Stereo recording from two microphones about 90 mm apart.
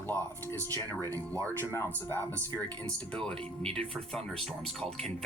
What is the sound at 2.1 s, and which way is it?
Speech, 25° left (ahead or behind).